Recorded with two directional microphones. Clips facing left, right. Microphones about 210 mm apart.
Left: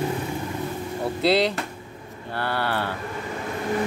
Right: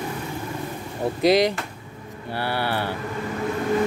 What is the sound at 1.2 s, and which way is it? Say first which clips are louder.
Speech: right 3 dB; 15° right (ahead or behind).